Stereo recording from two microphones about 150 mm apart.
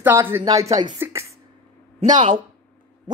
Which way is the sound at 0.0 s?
15° right (ahead or behind).